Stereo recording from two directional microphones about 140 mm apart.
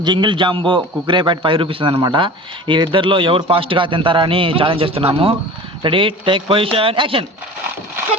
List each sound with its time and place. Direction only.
0.0 s a man's voice: 35° right (ahead or behind)